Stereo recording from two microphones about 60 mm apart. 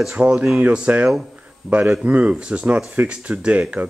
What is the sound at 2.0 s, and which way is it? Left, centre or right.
Speech, right.